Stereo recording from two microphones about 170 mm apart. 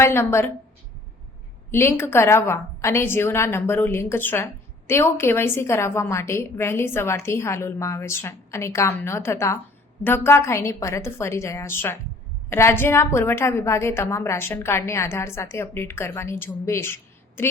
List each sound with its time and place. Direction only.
0.0 s a woman's voice: 15° left (ahead or behind)
1.7 s a woman's voice: 15° left (ahead or behind)